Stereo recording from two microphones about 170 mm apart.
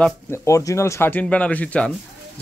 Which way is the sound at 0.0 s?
15° left (ahead or behind).